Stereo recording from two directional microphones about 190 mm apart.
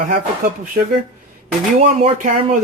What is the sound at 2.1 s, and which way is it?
Speech, 40° right (ahead or behind).